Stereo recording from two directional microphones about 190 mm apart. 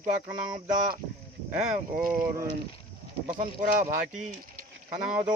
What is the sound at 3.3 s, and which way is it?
Speech, 40° right (ahead or behind).